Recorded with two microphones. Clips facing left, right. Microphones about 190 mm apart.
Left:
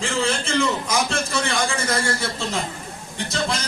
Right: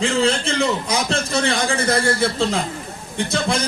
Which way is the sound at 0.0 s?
65° right (ahead or behind).